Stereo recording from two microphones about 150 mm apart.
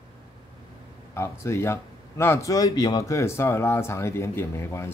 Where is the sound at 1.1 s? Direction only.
15° left (ahead or behind).